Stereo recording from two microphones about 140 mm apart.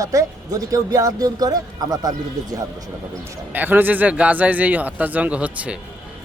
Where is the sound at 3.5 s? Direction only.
15° right (ahead or behind).